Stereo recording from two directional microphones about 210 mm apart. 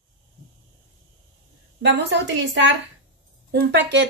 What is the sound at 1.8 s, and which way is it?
A woman's voice, 60° right (ahead or behind).